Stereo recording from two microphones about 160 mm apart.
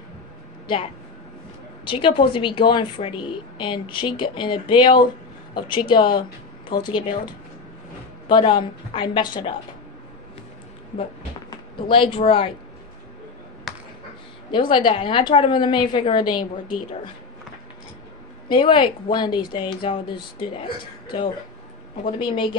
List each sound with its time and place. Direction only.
1.9 s a woman's voice: 30° left (ahead or behind)
8.3 s a woman's voice: 30° left (ahead or behind)
11.5 s speech: 30° left (ahead or behind)
14.5 s a woman's voice: 30° left (ahead or behind)
18.5 s a woman's voice: 30° left (ahead or behind)